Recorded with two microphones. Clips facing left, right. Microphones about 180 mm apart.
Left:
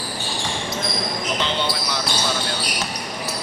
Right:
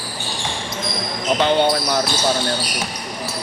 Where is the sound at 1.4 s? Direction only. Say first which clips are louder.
Right 12 dB; 55° right (ahead or behind).